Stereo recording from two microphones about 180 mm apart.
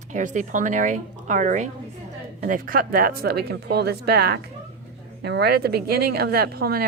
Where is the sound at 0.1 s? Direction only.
45° right (ahead or behind).